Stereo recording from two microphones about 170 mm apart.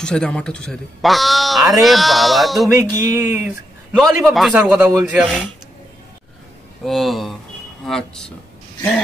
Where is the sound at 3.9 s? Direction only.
Centre (ahead or behind).